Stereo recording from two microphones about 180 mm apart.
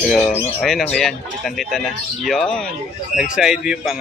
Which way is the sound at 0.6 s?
Centre (ahead or behind).